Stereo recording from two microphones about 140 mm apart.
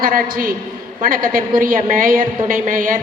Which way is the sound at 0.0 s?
90° right.